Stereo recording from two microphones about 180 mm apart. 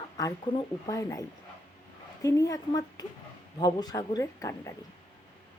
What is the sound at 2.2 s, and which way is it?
Speech, 20° left (ahead or behind).